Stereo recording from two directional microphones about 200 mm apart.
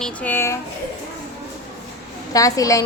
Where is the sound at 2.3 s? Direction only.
15° left (ahead or behind).